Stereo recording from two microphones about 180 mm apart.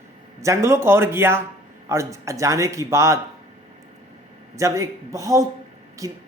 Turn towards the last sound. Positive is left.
turn(degrees=-20)  # may be behind; listen again after turning